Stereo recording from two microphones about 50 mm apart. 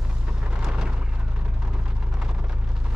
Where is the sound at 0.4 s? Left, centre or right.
Centre.